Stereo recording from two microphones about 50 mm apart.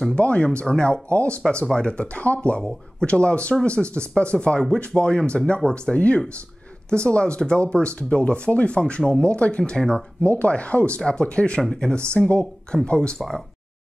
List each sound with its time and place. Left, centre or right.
0.1 s speech: left
10.2 s speech: left